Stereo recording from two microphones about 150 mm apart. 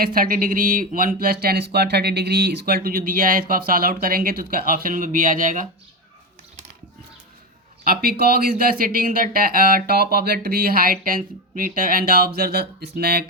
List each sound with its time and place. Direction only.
0.0 s speech: 70° right (ahead or behind)
7.9 s speech: 85° right
8.8 s speech: 70° right (ahead or behind)
11.0 s speech: 65° right (ahead or behind); by 13.2 s 90° right